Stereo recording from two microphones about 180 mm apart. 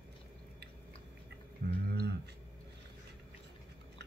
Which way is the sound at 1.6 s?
55° right (ahead or behind).